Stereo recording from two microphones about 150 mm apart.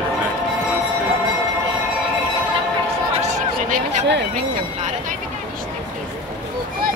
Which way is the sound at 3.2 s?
50° right (ahead or behind).